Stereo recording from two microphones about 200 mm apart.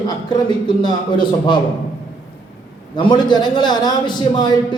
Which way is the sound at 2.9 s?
25° left (ahead or behind).